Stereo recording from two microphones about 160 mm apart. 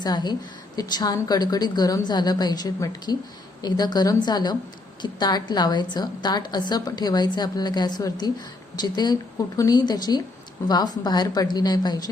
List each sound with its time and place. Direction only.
0.0 s a woman's voice: 25° left (ahead or behind)